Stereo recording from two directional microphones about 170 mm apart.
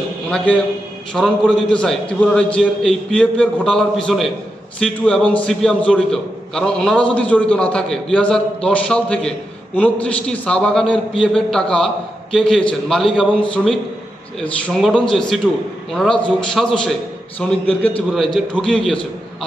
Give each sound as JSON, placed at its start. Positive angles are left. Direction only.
{"t": 1.1, "sound": "a man's voice", "side_deg": 5}